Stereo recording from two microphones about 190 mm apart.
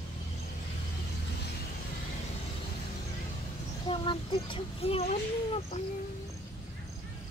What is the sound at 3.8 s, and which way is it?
Speech, 25° left (ahead or behind).